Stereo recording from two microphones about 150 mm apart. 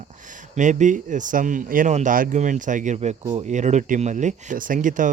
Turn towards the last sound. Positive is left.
turn(degrees=-60)  # may be behind; listen again after turning